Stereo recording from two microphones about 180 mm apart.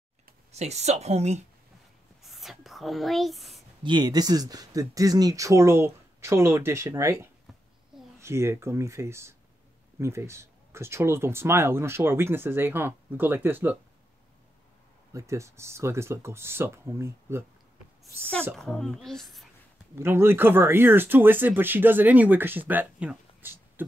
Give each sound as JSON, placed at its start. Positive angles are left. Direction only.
{"t": 0.5, "sound": "speech", "side_deg": -40}
{"t": 2.2, "sound": "writing", "side_deg": 0}
{"t": 3.8, "sound": "speech", "side_deg": -25}
{"t": 15.1, "sound": "speech", "side_deg": -15}
{"t": 18.0, "sound": "a child's voice", "side_deg": 5}
{"t": 20.0, "sound": "speech", "side_deg": -15}